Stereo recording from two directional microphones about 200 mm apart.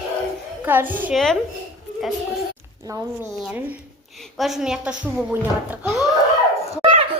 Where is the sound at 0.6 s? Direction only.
10° right (ahead or behind).